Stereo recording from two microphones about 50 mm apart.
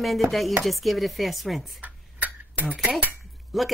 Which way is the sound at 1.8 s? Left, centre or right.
Right.